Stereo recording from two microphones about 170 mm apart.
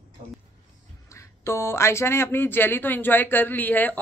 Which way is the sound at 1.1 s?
15° left (ahead or behind).